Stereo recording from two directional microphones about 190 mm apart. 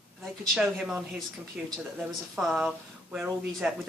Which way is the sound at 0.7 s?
5° right (ahead or behind).